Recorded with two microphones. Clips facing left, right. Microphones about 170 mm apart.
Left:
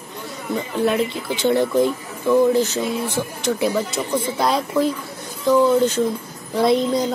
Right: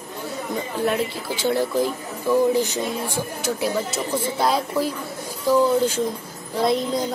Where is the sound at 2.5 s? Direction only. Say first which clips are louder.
Left 3 dB; 15° right (ahead or behind).